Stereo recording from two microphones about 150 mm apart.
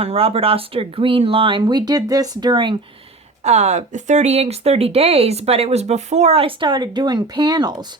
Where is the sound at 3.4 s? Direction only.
50° right (ahead or behind).